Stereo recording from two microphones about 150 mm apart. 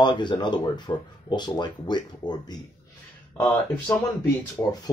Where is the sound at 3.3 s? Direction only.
20° left (ahead or behind).